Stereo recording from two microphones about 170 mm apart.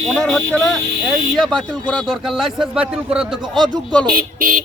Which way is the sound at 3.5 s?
25° right (ahead or behind).